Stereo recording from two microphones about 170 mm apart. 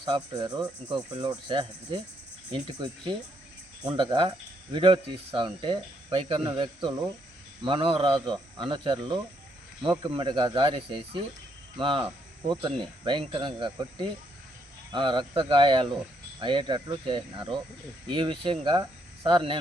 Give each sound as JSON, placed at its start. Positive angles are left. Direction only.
{"t": 0.0, "sound": "speech", "side_deg": -25}
{"t": 0.8, "sound": "speech", "side_deg": 5}
{"t": 1.2, "sound": "speech", "side_deg": -30}
{"t": 3.9, "sound": "speech", "side_deg": -30}